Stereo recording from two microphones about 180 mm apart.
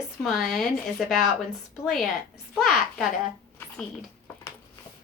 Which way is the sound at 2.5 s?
Centre (ahead or behind).